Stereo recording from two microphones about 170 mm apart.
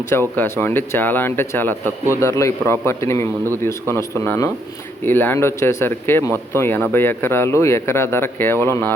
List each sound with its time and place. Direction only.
0.1 s speech: 15° left (ahead or behind)